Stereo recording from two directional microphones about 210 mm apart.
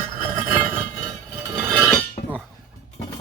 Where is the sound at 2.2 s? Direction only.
45° left (ahead or behind).